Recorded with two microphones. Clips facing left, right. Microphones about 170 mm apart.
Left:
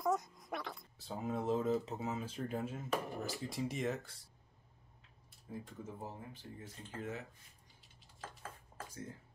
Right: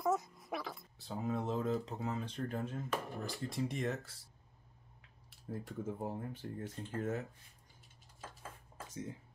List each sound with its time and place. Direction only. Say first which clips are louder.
0.0 s speech: right 1 dB; centre (ahead or behind)
5.5 s speech: right 5 dB; 55° right (ahead or behind)